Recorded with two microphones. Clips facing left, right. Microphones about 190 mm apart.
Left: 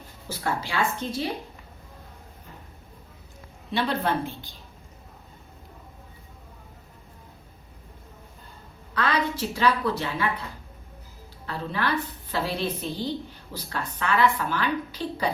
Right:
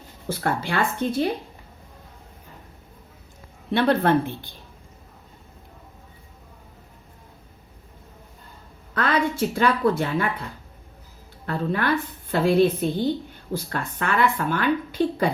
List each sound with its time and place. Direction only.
0.3 s speech: 55° right (ahead or behind)
3.7 s speech: 55° right (ahead or behind)
9.0 s a woman's voice: 50° right (ahead or behind)
11.4 s a woman's voice: 50° right (ahead or behind)